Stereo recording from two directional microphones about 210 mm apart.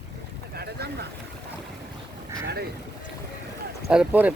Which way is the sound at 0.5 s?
50° right (ahead or behind).